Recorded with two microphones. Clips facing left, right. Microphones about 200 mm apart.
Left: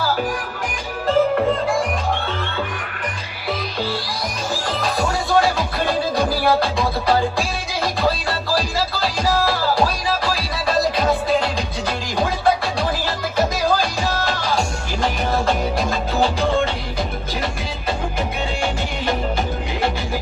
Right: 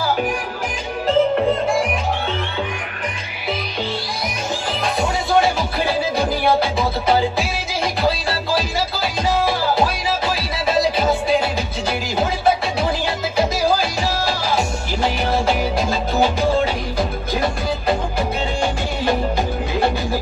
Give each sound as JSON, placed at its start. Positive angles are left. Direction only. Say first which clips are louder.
{"t": 1.0, "sound": "music", "louder": "right 1 dB", "side_deg": -25}
{"t": 6.4, "sound": "music", "louder": "right 1 dB", "side_deg": -20}
{"t": 9.4, "sound": "music", "louder": "right 1 dB", "side_deg": -25}
{"t": 13.6, "sound": "music", "louder": "right 1 dB", "side_deg": -30}